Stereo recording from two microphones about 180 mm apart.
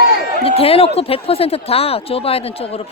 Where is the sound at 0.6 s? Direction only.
30° left (ahead or behind).